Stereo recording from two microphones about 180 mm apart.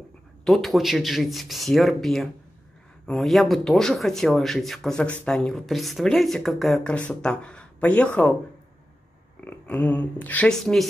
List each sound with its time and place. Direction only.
0.5 s speech: centre (ahead or behind)
9.4 s speech: 10° left (ahead or behind)